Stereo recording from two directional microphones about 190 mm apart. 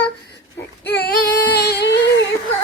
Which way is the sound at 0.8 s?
60° left (ahead or behind).